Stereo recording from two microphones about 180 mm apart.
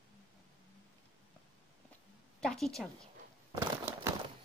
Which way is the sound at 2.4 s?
5° left (ahead or behind).